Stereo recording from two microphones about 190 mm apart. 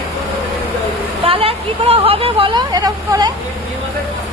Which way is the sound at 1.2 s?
30° right (ahead or behind).